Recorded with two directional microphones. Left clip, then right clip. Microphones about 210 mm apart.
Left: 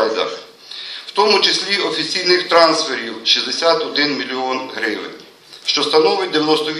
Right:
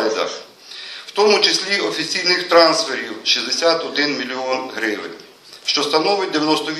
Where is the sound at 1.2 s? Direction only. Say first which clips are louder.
Left 1 dB; 10° left (ahead or behind).